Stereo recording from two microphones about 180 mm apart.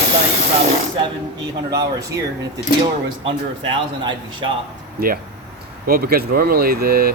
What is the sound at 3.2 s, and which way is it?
Speech, 25° right (ahead or behind).